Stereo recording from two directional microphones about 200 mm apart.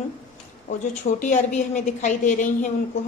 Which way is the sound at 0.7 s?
35° left (ahead or behind).